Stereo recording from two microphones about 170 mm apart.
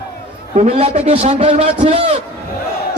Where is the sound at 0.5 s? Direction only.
40° right (ahead or behind).